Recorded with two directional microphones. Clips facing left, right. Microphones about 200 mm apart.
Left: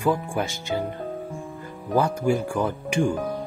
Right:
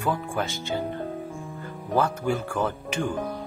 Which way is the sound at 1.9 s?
15° left (ahead or behind).